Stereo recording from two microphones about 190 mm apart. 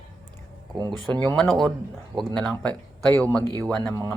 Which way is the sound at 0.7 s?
20° right (ahead or behind).